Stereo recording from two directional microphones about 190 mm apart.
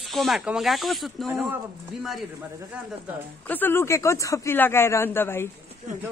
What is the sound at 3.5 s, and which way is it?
Speech, 10° left (ahead or behind).